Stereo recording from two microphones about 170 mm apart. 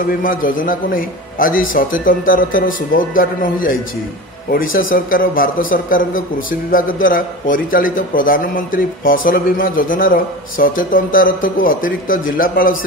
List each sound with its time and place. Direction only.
0.0 s a man's voice: 55° left (ahead or behind)